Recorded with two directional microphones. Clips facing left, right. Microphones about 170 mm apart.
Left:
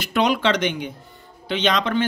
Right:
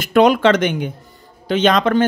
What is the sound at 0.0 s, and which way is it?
Speech, 50° right (ahead or behind).